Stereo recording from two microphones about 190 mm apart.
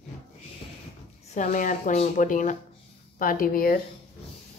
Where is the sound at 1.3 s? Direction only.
45° left (ahead or behind).